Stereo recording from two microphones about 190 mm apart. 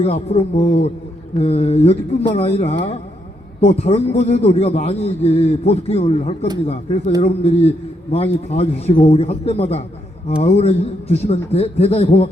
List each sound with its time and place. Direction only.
0.0 s a man's voice: 30° left (ahead or behind)